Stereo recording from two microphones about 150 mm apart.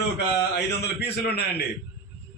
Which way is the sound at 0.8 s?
90° left.